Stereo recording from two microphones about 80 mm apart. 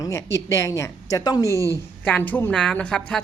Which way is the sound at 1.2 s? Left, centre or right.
Left.